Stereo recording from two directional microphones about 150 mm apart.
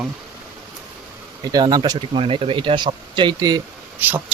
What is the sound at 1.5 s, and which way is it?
Speech, 30° right (ahead or behind).